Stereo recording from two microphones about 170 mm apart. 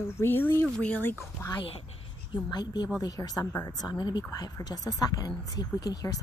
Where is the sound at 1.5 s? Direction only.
30° left (ahead or behind).